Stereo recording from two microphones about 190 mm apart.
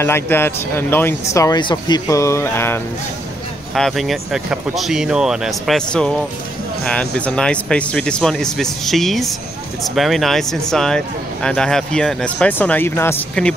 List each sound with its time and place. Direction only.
0.0 s speech: 10° left (ahead or behind)
3.7 s speech: centre (ahead or behind)